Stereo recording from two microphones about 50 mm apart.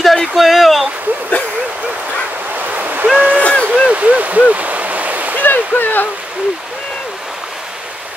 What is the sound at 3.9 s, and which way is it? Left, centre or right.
Stream, right.